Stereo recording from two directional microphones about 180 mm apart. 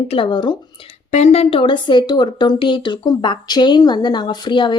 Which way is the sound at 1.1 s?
40° left (ahead or behind).